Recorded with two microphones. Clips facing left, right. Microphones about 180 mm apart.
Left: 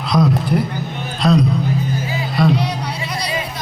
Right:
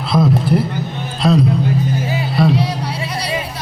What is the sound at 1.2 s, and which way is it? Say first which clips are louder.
Speech: right 1 dB; 5° right (ahead or behind).